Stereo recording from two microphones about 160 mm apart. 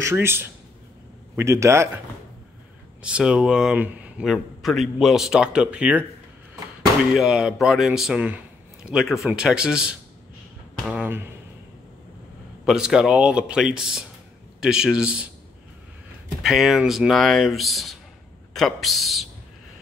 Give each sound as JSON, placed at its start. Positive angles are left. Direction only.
{"t": 0.0, "sound": "a man's voice", "side_deg": -15}
{"t": 3.0, "sound": "speech", "side_deg": -5}
{"t": 7.2, "sound": "a man's voice", "side_deg": -5}
{"t": 12.6, "sound": "speech", "side_deg": -5}
{"t": 16.4, "sound": "speech", "side_deg": 0}